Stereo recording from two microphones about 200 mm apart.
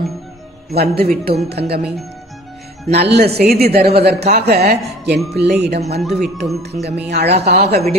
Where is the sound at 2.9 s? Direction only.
55° right (ahead or behind).